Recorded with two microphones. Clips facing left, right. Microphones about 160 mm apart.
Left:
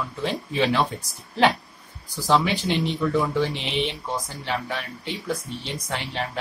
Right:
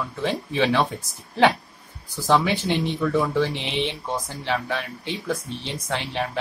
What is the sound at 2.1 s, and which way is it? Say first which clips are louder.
Speech: right 1 dB; 15° left (ahead or behind).